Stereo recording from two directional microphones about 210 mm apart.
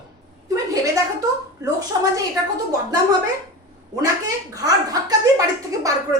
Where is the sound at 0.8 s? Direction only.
15° right (ahead or behind).